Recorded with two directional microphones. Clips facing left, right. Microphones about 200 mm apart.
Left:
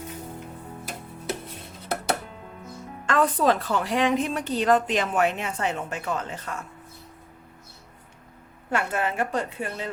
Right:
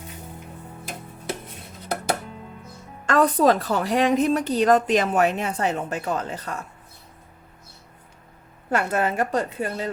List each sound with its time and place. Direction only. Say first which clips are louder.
3.1 s a woman's voice: right 4 dB; 40° right (ahead or behind)
8.7 s a woman's voice: right 4 dB; 40° right (ahead or behind)